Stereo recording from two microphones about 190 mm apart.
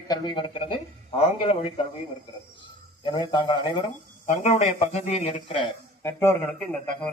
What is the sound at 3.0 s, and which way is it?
Speech, 25° left (ahead or behind).